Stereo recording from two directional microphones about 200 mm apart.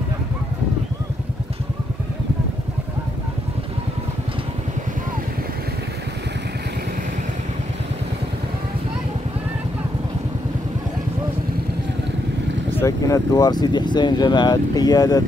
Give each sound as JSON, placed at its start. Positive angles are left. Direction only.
{"t": 12.8, "sound": "speech", "side_deg": 15}